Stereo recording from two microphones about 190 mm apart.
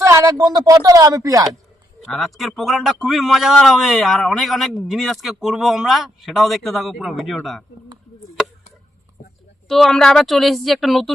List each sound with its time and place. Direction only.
0.0 s a man's voice: 15° right (ahead or behind)
2.0 s a man's voice: centre (ahead or behind)
9.6 s a man's voice: centre (ahead or behind)